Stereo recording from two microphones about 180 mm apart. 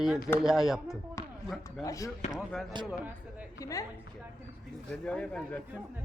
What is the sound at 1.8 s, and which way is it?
Speech, 15° left (ahead or behind).